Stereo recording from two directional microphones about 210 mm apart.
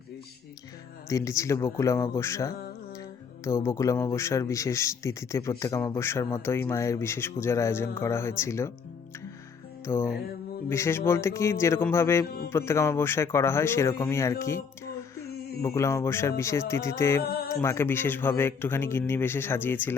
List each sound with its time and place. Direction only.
1.0 s a man's voice: 15° left (ahead or behind)
9.8 s music: 10° left (ahead or behind)
10.7 s a man's voice: 10° left (ahead or behind)
17.2 s speech: 45° left (ahead or behind)
17.5 s a man's voice: 15° left (ahead or behind)